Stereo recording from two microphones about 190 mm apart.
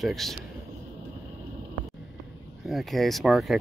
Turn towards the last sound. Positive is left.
turn(degrees=0)  # may be behind; listen again after turning